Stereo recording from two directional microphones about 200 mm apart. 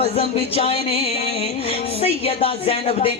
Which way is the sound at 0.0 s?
30° left (ahead or behind).